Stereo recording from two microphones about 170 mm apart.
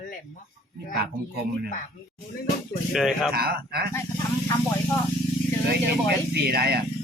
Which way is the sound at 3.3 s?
65° right (ahead or behind).